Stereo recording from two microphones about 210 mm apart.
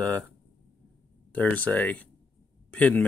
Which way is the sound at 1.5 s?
5° left (ahead or behind).